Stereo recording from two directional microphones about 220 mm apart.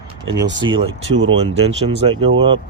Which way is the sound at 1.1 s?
55° right (ahead or behind).